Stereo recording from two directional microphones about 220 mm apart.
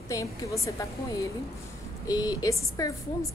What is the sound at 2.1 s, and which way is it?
Speech, 15° left (ahead or behind).